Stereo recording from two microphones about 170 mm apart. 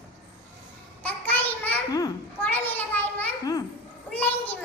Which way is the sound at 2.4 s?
10° left (ahead or behind).